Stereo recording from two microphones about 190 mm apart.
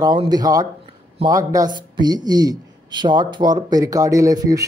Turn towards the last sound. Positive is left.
turn(degrees=-20)  # may be behind; listen again after turning